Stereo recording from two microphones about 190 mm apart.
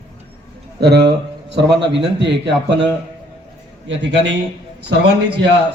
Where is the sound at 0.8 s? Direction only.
60° right (ahead or behind).